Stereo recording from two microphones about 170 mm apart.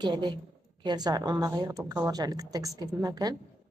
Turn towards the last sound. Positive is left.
turn(degrees=-25)  # may be behind; listen again after turning